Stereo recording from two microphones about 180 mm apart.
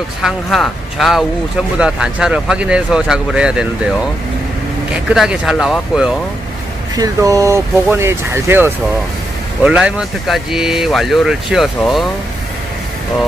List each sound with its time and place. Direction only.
0.2 s speech: centre (ahead or behind)
4.9 s speech: 5° right (ahead or behind)
7.0 s speech: 20° right (ahead or behind); by 12.1 s centre (ahead or behind)